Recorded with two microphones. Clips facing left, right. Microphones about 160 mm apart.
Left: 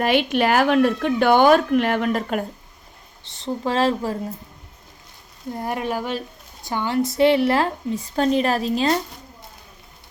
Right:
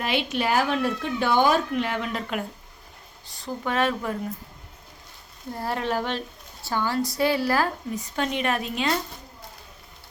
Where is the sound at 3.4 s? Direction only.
30° left (ahead or behind).